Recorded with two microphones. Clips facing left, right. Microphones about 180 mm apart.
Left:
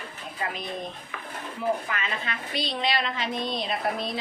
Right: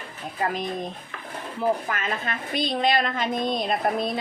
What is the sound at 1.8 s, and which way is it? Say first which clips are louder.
A woman's voice: right 3 dB; 45° right (ahead or behind).